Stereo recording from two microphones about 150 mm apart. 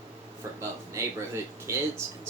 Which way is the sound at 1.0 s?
20° right (ahead or behind).